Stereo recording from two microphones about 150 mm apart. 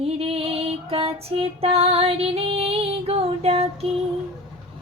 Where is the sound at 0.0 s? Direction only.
40° right (ahead or behind).